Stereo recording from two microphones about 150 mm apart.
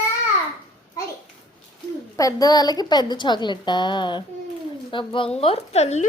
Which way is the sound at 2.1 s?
20° left (ahead or behind).